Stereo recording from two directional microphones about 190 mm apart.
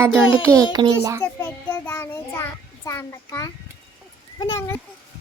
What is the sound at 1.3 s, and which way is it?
Child singing, 10° left (ahead or behind).